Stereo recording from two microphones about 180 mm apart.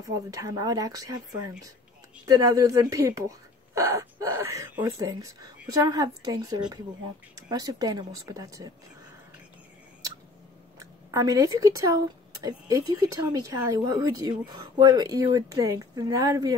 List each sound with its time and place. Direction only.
0.0 s speech: 20° right (ahead or behind)
2.2 s speech: 20° right (ahead or behind)
10.8 s speech: 20° right (ahead or behind)